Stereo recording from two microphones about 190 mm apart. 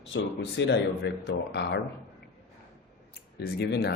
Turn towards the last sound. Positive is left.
turn(degrees=60)  # may be behind; listen again after turning